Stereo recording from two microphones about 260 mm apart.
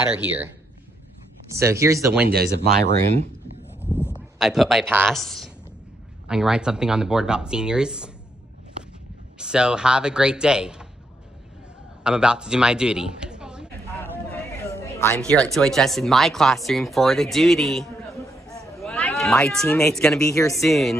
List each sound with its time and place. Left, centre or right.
0.1 s speech: centre
1.6 s speech: centre
2.2 s speech: right
3.8 s speech: centre
9.4 s speech: centre
12.0 s a man's voice: centre
14.3 s a sound: centre
15.5 s speech: centre